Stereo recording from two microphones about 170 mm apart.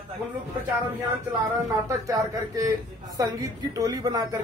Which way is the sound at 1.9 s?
20° right (ahead or behind).